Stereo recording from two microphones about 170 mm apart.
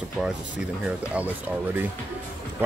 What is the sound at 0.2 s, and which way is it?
Speech, 5° right (ahead or behind).